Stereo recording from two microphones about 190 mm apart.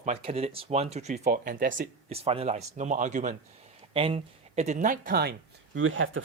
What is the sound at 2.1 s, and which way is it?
Speech, 30° right (ahead or behind).